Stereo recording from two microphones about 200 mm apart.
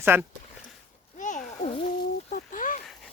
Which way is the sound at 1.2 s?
40° left (ahead or behind).